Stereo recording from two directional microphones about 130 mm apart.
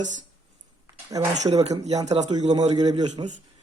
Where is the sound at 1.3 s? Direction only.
60° right (ahead or behind).